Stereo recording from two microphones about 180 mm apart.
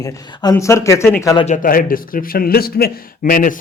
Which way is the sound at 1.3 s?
35° left (ahead or behind).